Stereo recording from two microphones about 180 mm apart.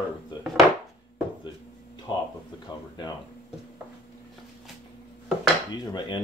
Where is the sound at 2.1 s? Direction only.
25° left (ahead or behind).